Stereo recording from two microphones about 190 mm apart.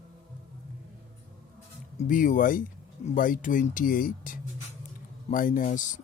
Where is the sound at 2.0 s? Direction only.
45° left (ahead or behind).